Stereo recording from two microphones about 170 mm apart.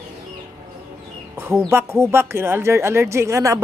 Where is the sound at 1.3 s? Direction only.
15° right (ahead or behind).